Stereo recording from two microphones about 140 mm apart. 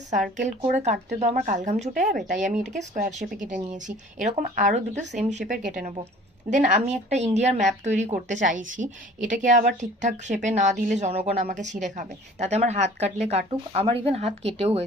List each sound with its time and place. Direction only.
0.2 s speech: 55° right (ahead or behind)
6.5 s a woman's voice: 60° right (ahead or behind)